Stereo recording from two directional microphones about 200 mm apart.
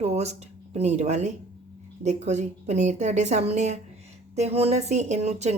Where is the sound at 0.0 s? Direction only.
30° right (ahead or behind).